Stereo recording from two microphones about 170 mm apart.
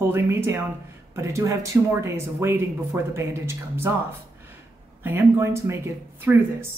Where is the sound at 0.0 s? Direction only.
15° right (ahead or behind).